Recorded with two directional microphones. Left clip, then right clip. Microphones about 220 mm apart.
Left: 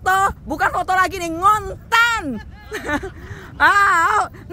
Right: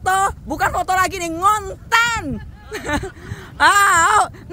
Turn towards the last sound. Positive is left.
turn(degrees=-15)  # may be behind; listen again after turning